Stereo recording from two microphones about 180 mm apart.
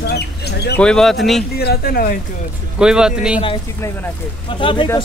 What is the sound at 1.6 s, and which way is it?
Speech, 60° left (ahead or behind).